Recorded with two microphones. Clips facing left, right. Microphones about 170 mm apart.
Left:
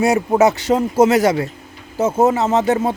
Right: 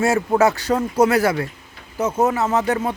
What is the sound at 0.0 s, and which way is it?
Speech, 15° left (ahead or behind).